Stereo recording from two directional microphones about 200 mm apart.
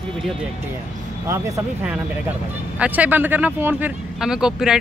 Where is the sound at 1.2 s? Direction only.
15° right (ahead or behind).